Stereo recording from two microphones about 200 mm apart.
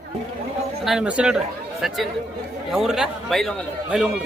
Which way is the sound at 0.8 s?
5° right (ahead or behind).